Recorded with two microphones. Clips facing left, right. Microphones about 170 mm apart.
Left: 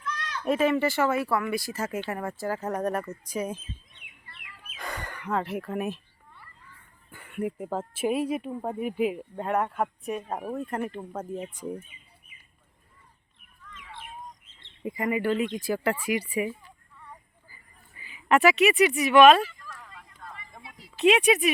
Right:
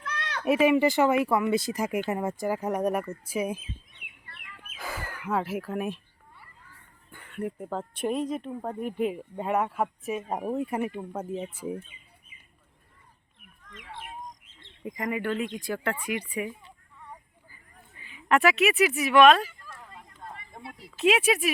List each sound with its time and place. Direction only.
0.0 s a sound: 70° right (ahead or behind)
0.4 s speech: 10° right (ahead or behind)
4.8 s speech: 5° right (ahead or behind)
7.1 s speech: 10° left (ahead or behind)
10.2 s speech: 20° right (ahead or behind)
13.7 s bird: 80° right
14.8 s speech: 5° left (ahead or behind)
18.0 s speech: 5° left (ahead or behind)
19.5 s a sound: 20° right (ahead or behind)
20.6 s a sound: 55° right (ahead or behind)
20.9 s speech: centre (ahead or behind)